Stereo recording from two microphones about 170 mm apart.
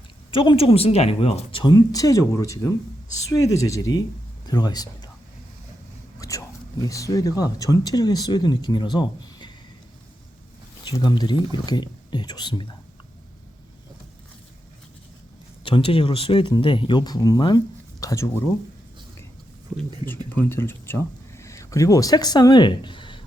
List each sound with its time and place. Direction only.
0.3 s speech: 30° left (ahead or behind)
6.1 s speech: 20° left (ahead or behind)
10.8 s speech: 25° left (ahead or behind)
15.6 s speech: 30° left (ahead or behind)
19.7 s speech: 20° right (ahead or behind)
20.1 s speech: 15° left (ahead or behind); by 23.2 s 30° left (ahead or behind)